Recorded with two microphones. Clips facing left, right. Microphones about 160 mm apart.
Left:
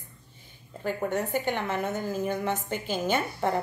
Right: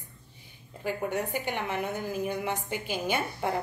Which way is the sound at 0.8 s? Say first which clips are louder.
Left 2 dB; 10° right (ahead or behind).